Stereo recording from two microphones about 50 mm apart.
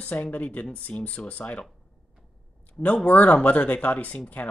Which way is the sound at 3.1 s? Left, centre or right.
Left.